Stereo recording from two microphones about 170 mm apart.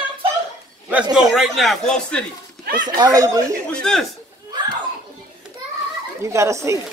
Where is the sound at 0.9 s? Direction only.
5° right (ahead or behind).